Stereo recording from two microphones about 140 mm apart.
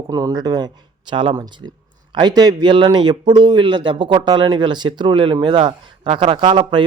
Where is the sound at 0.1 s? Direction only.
25° right (ahead or behind).